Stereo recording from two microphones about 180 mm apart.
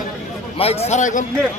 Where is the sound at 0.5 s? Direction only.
35° left (ahead or behind).